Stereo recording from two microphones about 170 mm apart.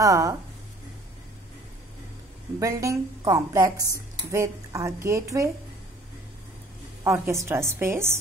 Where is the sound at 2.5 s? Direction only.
20° right (ahead or behind).